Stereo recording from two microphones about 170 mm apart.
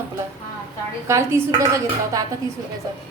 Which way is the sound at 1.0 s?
15° right (ahead or behind).